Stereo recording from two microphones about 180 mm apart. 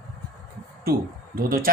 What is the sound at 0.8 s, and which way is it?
Speech, 55° right (ahead or behind).